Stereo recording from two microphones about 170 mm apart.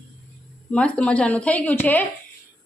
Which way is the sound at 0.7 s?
5° left (ahead or behind).